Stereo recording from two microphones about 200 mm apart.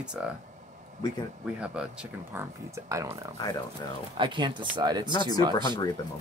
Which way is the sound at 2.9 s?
15° right (ahead or behind).